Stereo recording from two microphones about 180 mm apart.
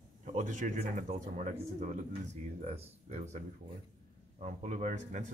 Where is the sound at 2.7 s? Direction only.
35° right (ahead or behind).